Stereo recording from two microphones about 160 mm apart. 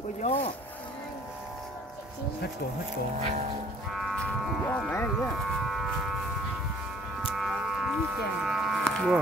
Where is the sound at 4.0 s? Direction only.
5° left (ahead or behind).